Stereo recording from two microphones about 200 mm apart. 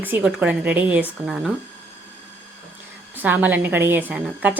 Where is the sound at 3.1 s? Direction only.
10° right (ahead or behind).